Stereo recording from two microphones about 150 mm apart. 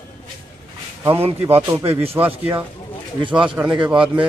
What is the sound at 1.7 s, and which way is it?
Speech, 40° right (ahead or behind).